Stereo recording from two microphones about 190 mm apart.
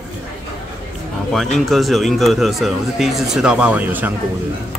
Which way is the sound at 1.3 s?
Centre (ahead or behind).